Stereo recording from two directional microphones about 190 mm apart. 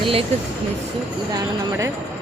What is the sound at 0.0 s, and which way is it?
Speech, 30° right (ahead or behind).